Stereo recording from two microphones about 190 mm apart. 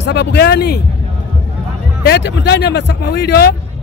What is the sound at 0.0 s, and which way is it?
Speech, 65° left (ahead or behind).